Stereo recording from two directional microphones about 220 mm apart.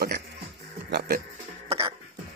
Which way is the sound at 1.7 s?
25° right (ahead or behind).